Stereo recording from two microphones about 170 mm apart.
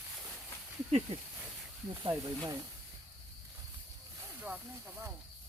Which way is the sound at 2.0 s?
25° right (ahead or behind).